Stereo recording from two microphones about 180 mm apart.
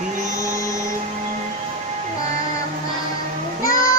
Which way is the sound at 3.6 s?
20° left (ahead or behind).